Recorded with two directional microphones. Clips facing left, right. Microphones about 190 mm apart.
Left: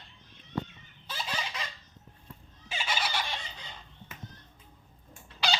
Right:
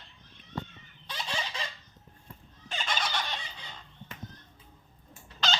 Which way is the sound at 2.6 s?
5° left (ahead or behind).